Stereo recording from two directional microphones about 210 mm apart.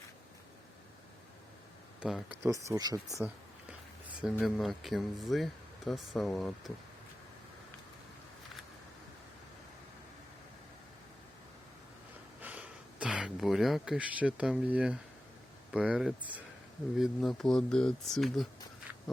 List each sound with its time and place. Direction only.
2.0 s speech: 5° right (ahead or behind)
2.4 s speech: 15° right (ahead or behind)
3.2 s speech: 5° right (ahead or behind)
12.4 s a sound: 5° right (ahead or behind)
15.7 s speech: 5° right (ahead or behind)